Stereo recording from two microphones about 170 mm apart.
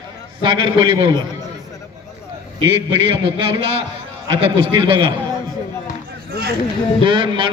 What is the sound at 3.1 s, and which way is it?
A man's voice, 30° right (ahead or behind).